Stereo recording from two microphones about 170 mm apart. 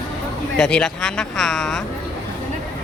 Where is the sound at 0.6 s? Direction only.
5° left (ahead or behind).